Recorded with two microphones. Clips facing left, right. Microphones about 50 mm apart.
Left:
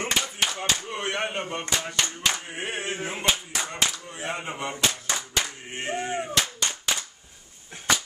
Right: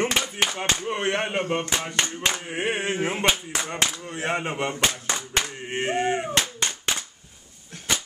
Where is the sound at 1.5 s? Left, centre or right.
Right.